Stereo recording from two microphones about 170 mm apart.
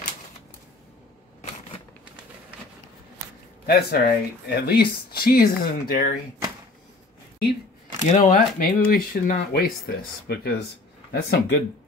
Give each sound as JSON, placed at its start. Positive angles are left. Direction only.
{"t": 3.6, "sound": "speech", "side_deg": 65}
{"t": 8.1, "sound": "speech", "side_deg": 50}